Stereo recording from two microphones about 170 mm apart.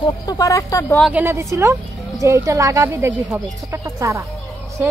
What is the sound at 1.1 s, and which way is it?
Speech, 15° right (ahead or behind).